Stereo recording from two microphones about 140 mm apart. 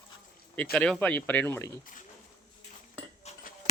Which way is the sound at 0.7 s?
5° left (ahead or behind).